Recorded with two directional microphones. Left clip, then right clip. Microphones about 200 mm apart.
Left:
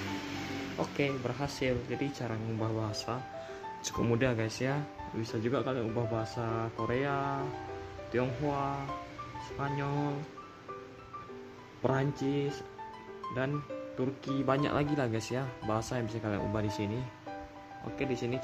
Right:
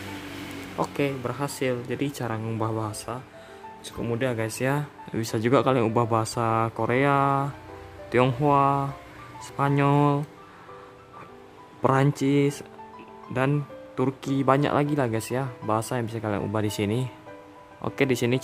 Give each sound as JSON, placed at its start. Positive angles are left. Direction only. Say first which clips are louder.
{"t": 0.7, "sound": "speech", "louder": "right 7 dB", "side_deg": -30}
{"t": 3.8, "sound": "speech", "louder": "right 2 dB", "side_deg": 10}
{"t": 4.2, "sound": "speech", "louder": "right 8 dB", "side_deg": -5}
{"t": 4.5, "sound": "speech", "louder": "right 7 dB", "side_deg": -25}
{"t": 5.2, "sound": "speech", "louder": "right 11 dB", "side_deg": -45}
{"t": 11.8, "sound": "speech", "louder": "right 9 dB", "side_deg": -35}
{"t": 13.9, "sound": "speech", "louder": "right 9 dB", "side_deg": -35}